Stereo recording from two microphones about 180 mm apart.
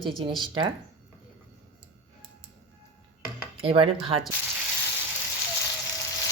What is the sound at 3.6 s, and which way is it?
Speech, 30° right (ahead or behind).